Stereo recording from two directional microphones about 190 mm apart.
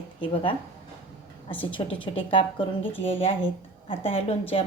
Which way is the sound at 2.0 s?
25° left (ahead or behind).